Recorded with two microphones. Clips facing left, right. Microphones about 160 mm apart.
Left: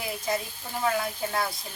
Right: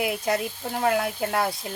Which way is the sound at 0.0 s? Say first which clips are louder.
Right 5 dB; 70° right (ahead or behind).